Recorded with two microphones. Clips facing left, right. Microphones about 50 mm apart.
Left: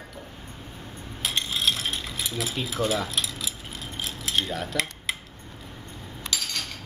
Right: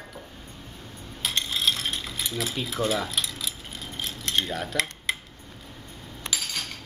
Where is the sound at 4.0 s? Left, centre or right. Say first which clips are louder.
Even; centre.